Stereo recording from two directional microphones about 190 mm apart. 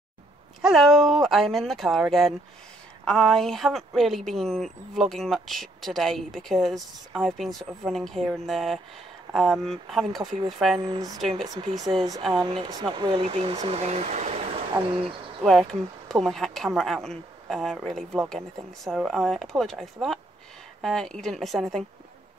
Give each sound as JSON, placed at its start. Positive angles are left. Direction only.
{"t": 0.6, "sound": "speech", "side_deg": 0}
{"t": 10.8, "sound": "speech", "side_deg": -20}
{"t": 15.4, "sound": "speech", "side_deg": 0}